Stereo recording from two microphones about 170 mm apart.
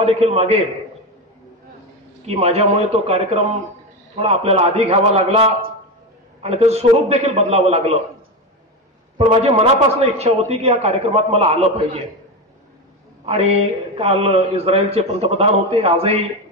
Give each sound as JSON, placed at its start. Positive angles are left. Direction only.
{"t": 0.0, "sound": "a man's voice", "side_deg": -35}
{"t": 2.2, "sound": "a man's voice", "side_deg": -40}
{"t": 6.4, "sound": "a man's voice", "side_deg": -40}
{"t": 9.2, "sound": "a man's voice", "side_deg": -35}
{"t": 13.2, "sound": "a man's voice", "side_deg": -35}